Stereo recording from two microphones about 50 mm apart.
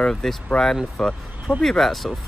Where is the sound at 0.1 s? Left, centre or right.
Centre.